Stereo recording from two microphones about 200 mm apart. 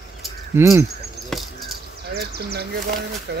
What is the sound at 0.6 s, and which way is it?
Speech, 15° right (ahead or behind).